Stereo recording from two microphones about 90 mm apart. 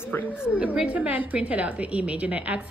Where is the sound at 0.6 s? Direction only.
15° right (ahead or behind).